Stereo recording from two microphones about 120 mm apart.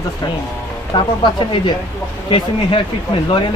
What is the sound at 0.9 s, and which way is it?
Speech, 40° left (ahead or behind).